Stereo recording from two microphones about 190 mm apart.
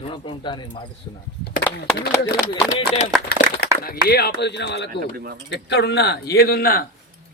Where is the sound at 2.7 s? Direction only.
45° left (ahead or behind).